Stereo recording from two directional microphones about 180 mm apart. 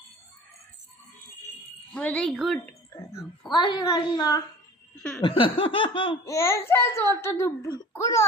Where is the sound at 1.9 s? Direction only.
5° left (ahead or behind).